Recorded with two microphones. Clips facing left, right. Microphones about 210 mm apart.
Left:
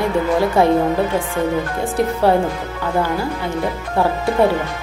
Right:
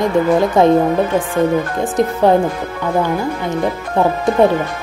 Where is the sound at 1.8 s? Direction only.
15° right (ahead or behind).